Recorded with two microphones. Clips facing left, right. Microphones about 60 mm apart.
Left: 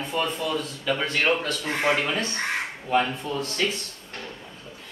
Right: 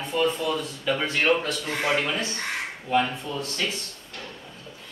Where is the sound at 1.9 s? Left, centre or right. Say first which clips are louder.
Even; centre.